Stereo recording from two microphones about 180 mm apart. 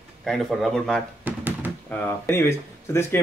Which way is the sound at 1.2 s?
10° right (ahead or behind).